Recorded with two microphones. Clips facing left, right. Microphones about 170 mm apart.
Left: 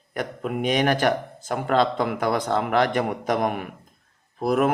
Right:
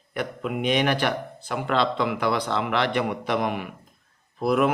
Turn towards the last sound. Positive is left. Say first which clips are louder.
# even
turn(degrees=45)  # may be behind; listen again after turning